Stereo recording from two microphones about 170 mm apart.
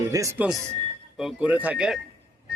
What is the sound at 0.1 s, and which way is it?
Speech, 20° right (ahead or behind).